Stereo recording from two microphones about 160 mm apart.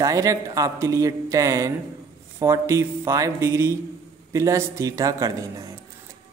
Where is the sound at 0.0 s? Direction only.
20° right (ahead or behind).